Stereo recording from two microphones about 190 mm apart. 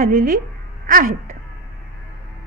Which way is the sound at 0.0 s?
50° right (ahead or behind).